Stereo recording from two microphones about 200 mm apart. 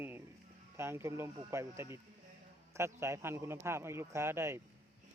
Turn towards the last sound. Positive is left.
turn(degrees=-15)  # may be behind; listen again after turning